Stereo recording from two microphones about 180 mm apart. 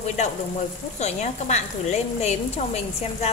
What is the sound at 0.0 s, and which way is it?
Speech, 40° left (ahead or behind).